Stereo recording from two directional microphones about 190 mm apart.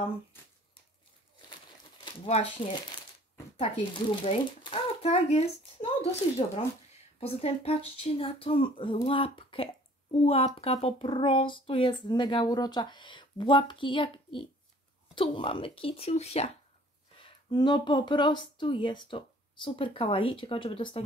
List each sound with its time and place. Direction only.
2.0 s a child's voice: 30° left (ahead or behind)
7.2 s speech: 30° left (ahead or behind)
17.2 s speech: 20° left (ahead or behind)